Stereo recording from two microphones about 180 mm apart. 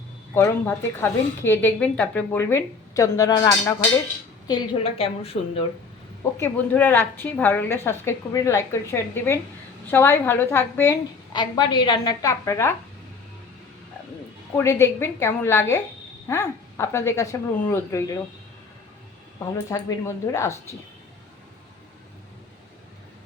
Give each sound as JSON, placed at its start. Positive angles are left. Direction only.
{"t": 0.3, "sound": "a woman's voice", "side_deg": 15}
{"t": 6.3, "sound": "speech", "side_deg": 10}
{"t": 11.3, "sound": "a woman's voice", "side_deg": 25}
{"t": 14.5, "sound": "speech", "side_deg": 15}
{"t": 19.7, "sound": "speech", "side_deg": 15}